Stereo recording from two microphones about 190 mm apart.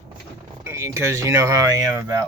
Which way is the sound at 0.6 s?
15° right (ahead or behind).